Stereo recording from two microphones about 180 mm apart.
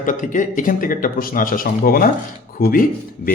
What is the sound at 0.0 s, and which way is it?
Speech, 45° left (ahead or behind).